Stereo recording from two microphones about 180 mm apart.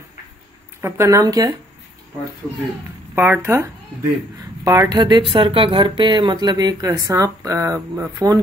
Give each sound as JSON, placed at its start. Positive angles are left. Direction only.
{"t": 0.7, "sound": "speech", "side_deg": -15}
{"t": 3.2, "sound": "speech", "side_deg": -15}